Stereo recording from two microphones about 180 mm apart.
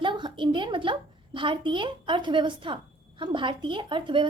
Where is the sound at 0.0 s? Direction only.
25° right (ahead or behind).